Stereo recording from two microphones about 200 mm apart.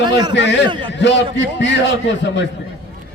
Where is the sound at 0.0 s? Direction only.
20° right (ahead or behind).